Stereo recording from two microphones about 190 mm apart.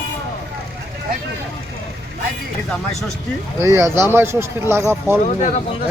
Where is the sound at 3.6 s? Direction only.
15° right (ahead or behind).